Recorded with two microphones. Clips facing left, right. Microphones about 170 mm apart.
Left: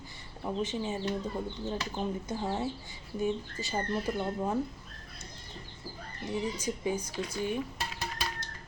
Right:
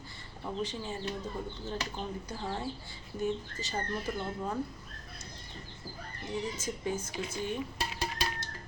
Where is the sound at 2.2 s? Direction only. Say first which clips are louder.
Left 4 dB; 25° left (ahead or behind).